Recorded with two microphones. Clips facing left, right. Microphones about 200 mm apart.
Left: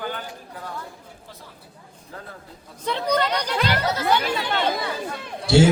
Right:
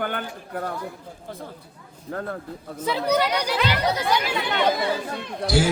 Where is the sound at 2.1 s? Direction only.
55° right (ahead or behind).